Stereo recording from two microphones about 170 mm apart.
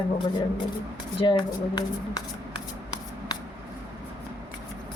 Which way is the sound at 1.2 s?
30° left (ahead or behind).